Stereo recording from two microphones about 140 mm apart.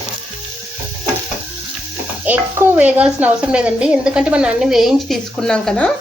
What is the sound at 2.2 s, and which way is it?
Speech, 10° right (ahead or behind).